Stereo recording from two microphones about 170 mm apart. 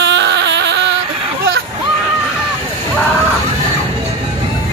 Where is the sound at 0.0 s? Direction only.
90° right.